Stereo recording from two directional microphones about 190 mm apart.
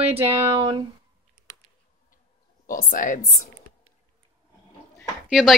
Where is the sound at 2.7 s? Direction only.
45° left (ahead or behind).